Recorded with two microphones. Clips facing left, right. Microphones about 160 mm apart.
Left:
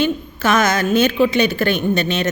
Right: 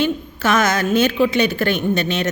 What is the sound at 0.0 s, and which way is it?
A woman's voice, 20° left (ahead or behind).